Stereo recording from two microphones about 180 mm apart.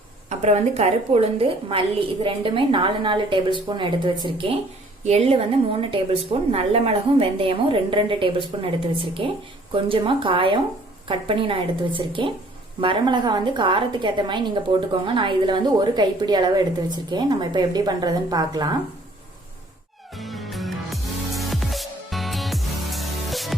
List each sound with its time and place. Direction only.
0.3 s a woman's voice: 40° right (ahead or behind); by 18.7 s 20° right (ahead or behind)
20.1 s music: centre (ahead or behind)